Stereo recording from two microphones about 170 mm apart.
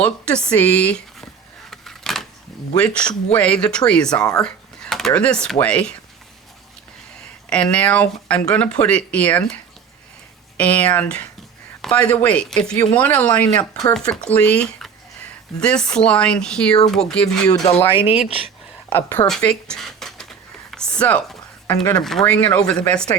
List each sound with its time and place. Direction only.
0.0 s speech: 5° left (ahead or behind)
1.7 s a sound: centre (ahead or behind)
2.7 s speech: 5° left (ahead or behind)
7.5 s speech: 5° left (ahead or behind)
10.6 s speech: 10° left (ahead or behind)
17.6 s speech: 40° left (ahead or behind)
18.4 s a sound: 10° left (ahead or behind)
19.3 s speech: 5° left (ahead or behind)
20.7 s a sound: 5° left (ahead or behind)
21.8 s speech: centre (ahead or behind)